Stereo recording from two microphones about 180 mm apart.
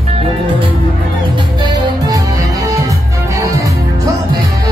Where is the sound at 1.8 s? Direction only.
20° right (ahead or behind).